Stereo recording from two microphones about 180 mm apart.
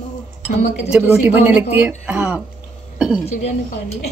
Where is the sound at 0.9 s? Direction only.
10° right (ahead or behind).